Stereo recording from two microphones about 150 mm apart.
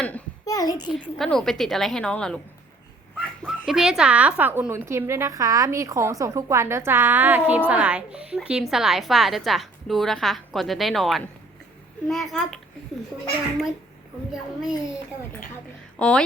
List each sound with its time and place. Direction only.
0.4 s a child's voice: 25° left (ahead or behind)
1.2 s a woman's voice: 5° left (ahead or behind)
16.0 s speech: 5° left (ahead or behind)